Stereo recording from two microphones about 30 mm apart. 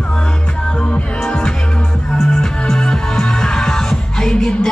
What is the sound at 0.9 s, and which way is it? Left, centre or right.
Music, left.